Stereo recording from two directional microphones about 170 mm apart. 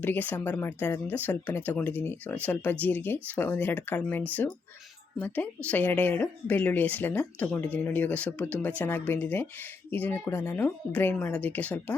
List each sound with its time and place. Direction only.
0.0 s speech: 10° left (ahead or behind)
5.2 s speech: 10° left (ahead or behind)